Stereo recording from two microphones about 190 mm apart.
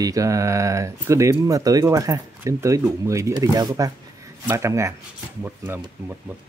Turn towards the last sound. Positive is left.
turn(degrees=-10)  # may be behind; listen again after turning